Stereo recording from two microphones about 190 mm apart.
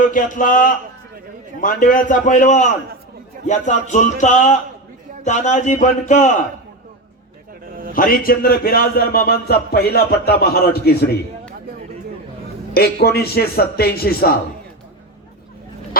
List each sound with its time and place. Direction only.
0.0 s a man's voice: 45° left (ahead or behind)
7.6 s a sound: 50° right (ahead or behind)
7.9 s speech: 50° left (ahead or behind)
12.7 s speech: 55° left (ahead or behind)